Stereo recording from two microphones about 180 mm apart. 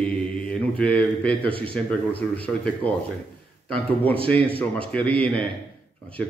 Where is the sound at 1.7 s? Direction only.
5° left (ahead or behind).